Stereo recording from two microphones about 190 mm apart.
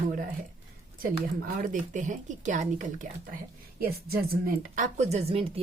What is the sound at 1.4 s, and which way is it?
A woman's voice, 45° right (ahead or behind).